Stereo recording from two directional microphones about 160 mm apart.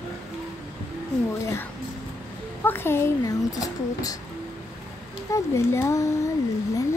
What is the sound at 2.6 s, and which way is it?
Speech, 15° left (ahead or behind).